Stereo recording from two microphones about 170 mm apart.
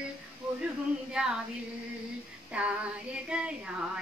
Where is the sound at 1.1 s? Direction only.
5° right (ahead or behind).